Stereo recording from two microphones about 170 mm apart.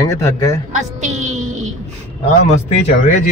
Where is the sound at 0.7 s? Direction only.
45° right (ahead or behind).